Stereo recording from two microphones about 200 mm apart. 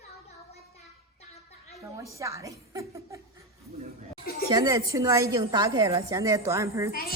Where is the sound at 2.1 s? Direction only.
15° right (ahead or behind).